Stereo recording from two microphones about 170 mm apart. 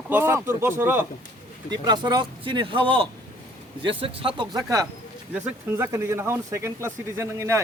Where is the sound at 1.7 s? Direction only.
25° right (ahead or behind).